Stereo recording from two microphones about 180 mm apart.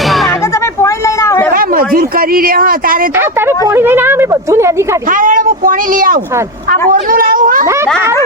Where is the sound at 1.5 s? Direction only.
55° right (ahead or behind).